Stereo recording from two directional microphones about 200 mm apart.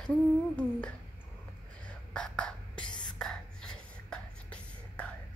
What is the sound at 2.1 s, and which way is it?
Whispering, 5° left (ahead or behind).